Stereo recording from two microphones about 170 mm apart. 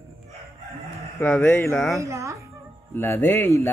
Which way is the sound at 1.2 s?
10° left (ahead or behind).